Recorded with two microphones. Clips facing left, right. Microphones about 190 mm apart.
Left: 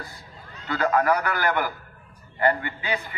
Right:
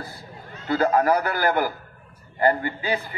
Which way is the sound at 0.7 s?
35° right (ahead or behind).